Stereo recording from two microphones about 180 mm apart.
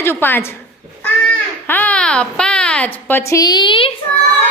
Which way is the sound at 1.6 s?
10° left (ahead or behind).